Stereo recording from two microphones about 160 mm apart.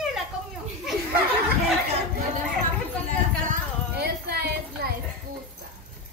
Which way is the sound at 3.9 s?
85° right.